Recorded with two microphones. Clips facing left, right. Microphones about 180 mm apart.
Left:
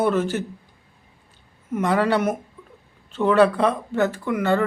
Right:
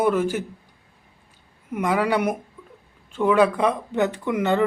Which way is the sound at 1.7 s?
10° right (ahead or behind).